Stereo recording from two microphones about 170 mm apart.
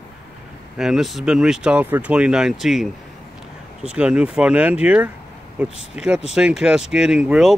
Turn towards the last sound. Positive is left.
turn(degrees=-5)  # may be behind; listen again after turning